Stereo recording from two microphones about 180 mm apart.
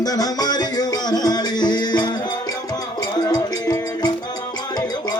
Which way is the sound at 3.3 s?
20° left (ahead or behind).